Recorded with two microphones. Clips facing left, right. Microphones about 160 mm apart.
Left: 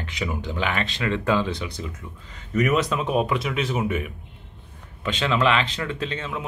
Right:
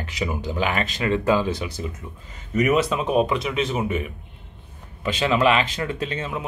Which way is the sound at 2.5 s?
5° right (ahead or behind).